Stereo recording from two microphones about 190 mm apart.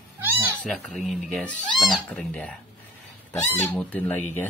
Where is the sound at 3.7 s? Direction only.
10° left (ahead or behind).